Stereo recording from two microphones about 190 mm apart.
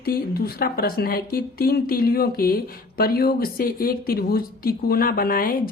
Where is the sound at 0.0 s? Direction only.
50° left (ahead or behind).